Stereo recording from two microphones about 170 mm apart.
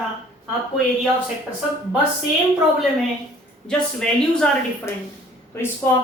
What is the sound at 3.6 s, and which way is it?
Speech, 5° left (ahead or behind).